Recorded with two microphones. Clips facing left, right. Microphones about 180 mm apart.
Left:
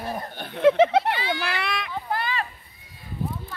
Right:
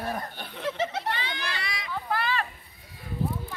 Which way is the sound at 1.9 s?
15° left (ahead or behind).